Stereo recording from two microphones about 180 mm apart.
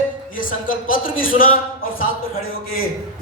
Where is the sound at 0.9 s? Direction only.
50° left (ahead or behind).